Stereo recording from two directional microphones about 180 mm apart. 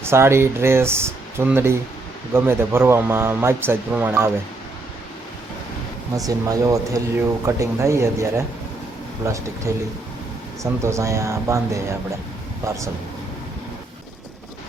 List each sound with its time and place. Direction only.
0.0 s speech: 15° right (ahead or behind)
6.1 s speech: 20° right (ahead or behind)